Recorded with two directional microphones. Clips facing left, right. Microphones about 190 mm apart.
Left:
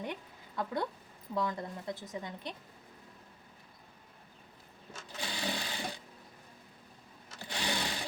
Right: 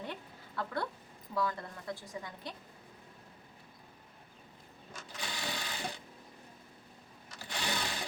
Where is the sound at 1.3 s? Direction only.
20° left (ahead or behind).